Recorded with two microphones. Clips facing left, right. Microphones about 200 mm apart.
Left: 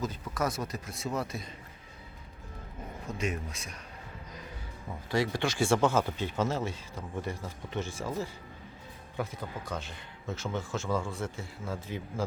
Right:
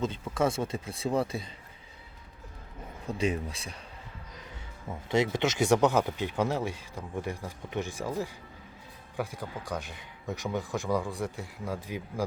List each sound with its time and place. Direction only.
0.0 s speech: 25° right (ahead or behind)
3.1 s speech: 30° right (ahead or behind)
5.0 s speech: 20° right (ahead or behind)